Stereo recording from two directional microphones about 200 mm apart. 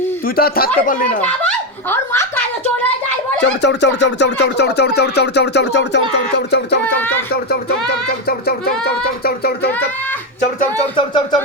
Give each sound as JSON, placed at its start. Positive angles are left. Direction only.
{"t": 0.3, "sound": "music", "side_deg": 50}
{"t": 1.2, "sound": "speech", "side_deg": 10}
{"t": 3.4, "sound": "speech", "side_deg": 60}
{"t": 7.5, "sound": "music", "side_deg": 50}
{"t": 10.4, "sound": "speech", "side_deg": 40}
{"t": 10.9, "sound": "speech", "side_deg": 20}